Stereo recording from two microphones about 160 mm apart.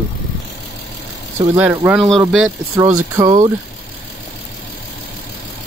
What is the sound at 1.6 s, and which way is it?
Speech, 10° right (ahead or behind).